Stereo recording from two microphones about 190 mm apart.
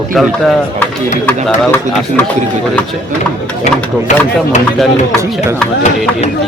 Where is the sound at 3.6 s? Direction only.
40° left (ahead or behind).